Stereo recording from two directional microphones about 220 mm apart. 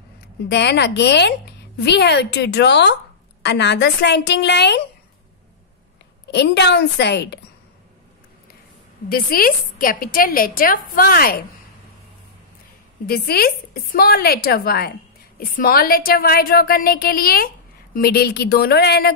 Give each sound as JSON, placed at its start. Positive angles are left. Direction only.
{"t": 0.5, "sound": "a woman's voice", "side_deg": 50}
{"t": 6.2, "sound": "a woman's voice", "side_deg": 50}
{"t": 9.1, "sound": "a woman's voice", "side_deg": 40}
{"t": 13.0, "sound": "a woman's voice", "side_deg": 45}